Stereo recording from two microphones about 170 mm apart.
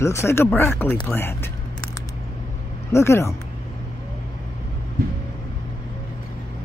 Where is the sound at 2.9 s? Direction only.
15° left (ahead or behind).